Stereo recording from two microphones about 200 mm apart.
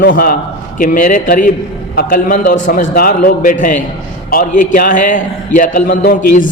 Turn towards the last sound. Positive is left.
turn(degrees=40)  # may be behind; listen again after turning